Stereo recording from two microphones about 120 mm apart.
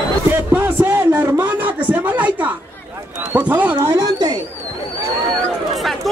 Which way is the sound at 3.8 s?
30° right (ahead or behind).